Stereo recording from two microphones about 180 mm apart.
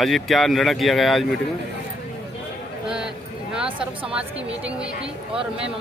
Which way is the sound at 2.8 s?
5° right (ahead or behind).